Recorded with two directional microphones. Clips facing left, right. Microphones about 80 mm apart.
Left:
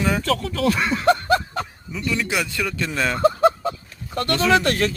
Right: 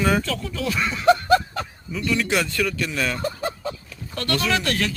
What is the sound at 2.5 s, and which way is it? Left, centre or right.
Speech, left.